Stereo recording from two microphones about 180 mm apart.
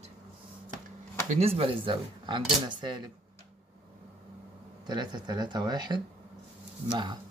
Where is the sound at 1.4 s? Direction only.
35° right (ahead or behind).